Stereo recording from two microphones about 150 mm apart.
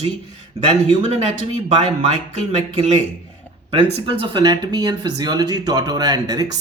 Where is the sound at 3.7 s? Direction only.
40° right (ahead or behind).